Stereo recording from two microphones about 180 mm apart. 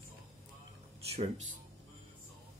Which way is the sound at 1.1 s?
40° right (ahead or behind).